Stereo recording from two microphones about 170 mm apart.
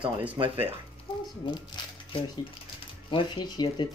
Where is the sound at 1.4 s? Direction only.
30° left (ahead or behind).